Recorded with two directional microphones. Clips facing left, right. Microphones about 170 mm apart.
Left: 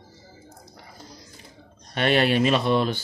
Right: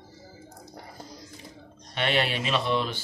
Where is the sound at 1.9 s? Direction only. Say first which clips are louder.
Left 6 dB; 45° left (ahead or behind).